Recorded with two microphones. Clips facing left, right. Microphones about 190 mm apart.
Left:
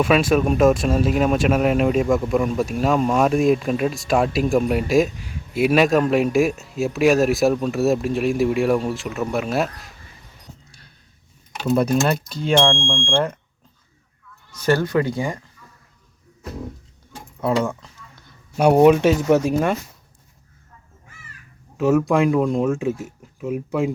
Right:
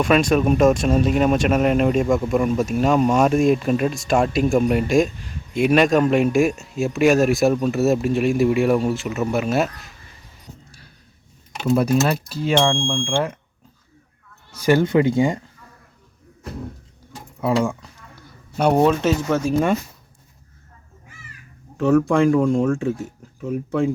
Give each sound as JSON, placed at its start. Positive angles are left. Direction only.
{"t": 0.0, "sound": "speech", "side_deg": 0}
{"t": 11.6, "sound": "speech", "side_deg": -5}
{"t": 14.6, "sound": "speech", "side_deg": -15}
{"t": 17.4, "sound": "speech", "side_deg": -5}
{"t": 18.5, "sound": "speech", "side_deg": 10}
{"t": 21.8, "sound": "speech", "side_deg": 5}